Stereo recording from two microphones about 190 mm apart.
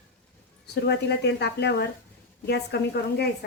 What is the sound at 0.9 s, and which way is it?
A woman's voice, 65° left (ahead or behind).